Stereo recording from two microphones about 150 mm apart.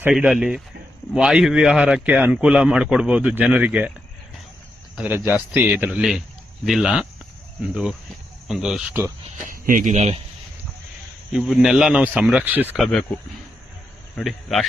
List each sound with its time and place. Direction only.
0.2 s a man's voice: 5° right (ahead or behind)
5.0 s a man's voice: 15° right (ahead or behind)
8.9 s speech: 15° right (ahead or behind)
9.5 s speech: 60° right (ahead or behind)
11.3 s a man's voice: 5° right (ahead or behind)
12.8 s a man's voice: centre (ahead or behind)
14.2 s a man's voice: centre (ahead or behind)